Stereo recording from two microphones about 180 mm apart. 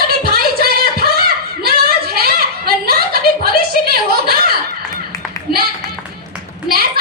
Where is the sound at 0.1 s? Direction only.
60° right (ahead or behind).